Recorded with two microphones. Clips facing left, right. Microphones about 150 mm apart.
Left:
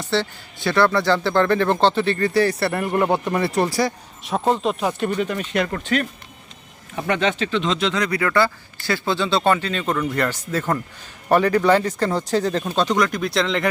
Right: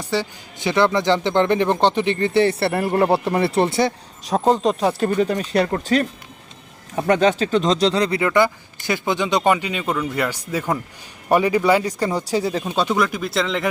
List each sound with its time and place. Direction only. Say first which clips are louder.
0.0 s speech: left 1 dB; 10° right (ahead or behind)